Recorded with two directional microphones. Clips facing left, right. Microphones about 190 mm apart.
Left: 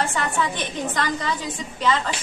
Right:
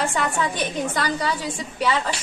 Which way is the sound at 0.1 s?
10° right (ahead or behind).